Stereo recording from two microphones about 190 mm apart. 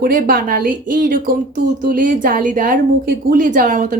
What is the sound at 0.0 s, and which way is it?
A woman's voice, 50° right (ahead or behind).